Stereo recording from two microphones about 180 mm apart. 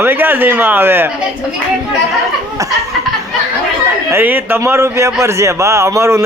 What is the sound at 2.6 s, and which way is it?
Laughter, 20° right (ahead or behind).